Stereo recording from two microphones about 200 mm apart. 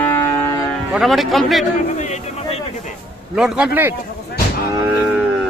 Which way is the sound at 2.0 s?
35° left (ahead or behind).